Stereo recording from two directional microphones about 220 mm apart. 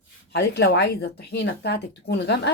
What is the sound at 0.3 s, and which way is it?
Speech, 50° left (ahead or behind).